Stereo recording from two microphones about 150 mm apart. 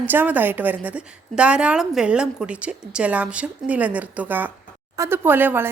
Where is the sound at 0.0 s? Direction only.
10° right (ahead or behind).